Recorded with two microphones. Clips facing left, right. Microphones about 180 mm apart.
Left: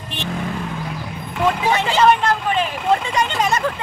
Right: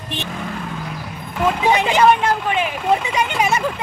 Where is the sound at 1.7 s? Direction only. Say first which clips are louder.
Right 2 dB; 15° right (ahead or behind).